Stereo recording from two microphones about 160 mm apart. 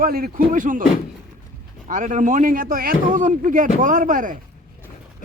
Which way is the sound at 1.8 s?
55° right (ahead or behind).